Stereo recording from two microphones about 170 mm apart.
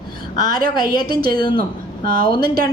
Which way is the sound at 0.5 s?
55° right (ahead or behind).